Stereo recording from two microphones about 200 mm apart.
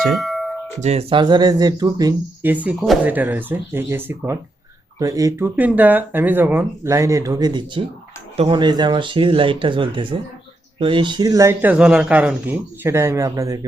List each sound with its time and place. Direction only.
0.1 s tubular bells: centre (ahead or behind)
0.8 s speech: 30° right (ahead or behind)
2.5 s speech: 10° right (ahead or behind)